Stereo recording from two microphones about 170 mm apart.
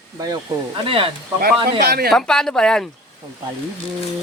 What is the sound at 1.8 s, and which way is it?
Speech, 70° right (ahead or behind).